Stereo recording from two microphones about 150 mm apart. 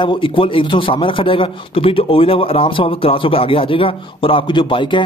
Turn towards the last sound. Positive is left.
turn(degrees=30)  # may be behind; listen again after turning